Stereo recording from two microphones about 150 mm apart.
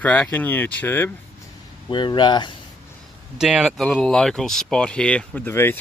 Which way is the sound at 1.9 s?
30° left (ahead or behind).